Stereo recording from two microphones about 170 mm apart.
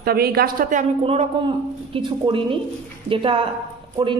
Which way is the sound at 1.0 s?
35° right (ahead or behind).